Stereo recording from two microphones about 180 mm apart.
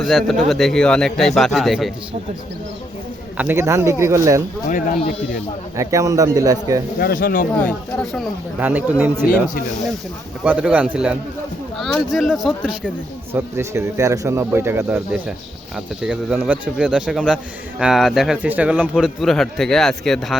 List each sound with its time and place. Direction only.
0.0 s speech: centre (ahead or behind)
3.3 s speech: 10° right (ahead or behind)
4.7 s speech: 55° left (ahead or behind)
5.7 s a man's voice: 15° right (ahead or behind)
7.0 s speech: 55° left (ahead or behind)
7.6 s speech: 5° left (ahead or behind)
8.5 s speech: 10° right (ahead or behind)
10.4 s speech: 5° right (ahead or behind)
13.6 s speech: 15° right (ahead or behind); by 20.3 s centre (ahead or behind)